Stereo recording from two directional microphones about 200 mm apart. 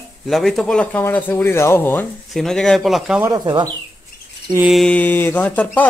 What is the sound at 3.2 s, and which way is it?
Speech, 20° right (ahead or behind).